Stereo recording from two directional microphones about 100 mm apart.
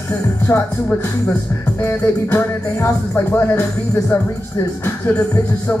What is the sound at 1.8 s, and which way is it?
Speech, 20° left (ahead or behind).